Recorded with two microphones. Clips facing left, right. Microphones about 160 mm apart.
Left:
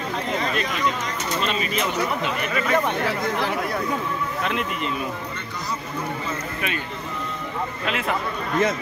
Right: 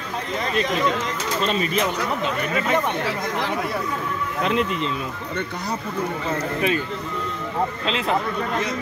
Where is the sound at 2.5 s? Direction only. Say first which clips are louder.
Even; 20° right (ahead or behind).